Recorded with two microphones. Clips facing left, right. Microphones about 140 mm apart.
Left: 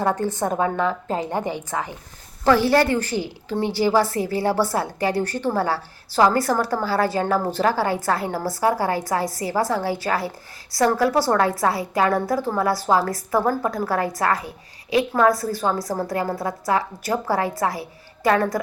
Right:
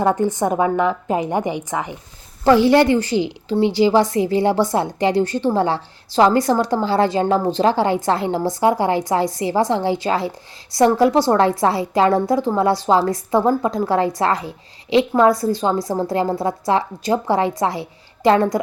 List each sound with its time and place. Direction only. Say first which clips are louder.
0.0 s a woman's voice: right 5 dB; 15° right (ahead or behind)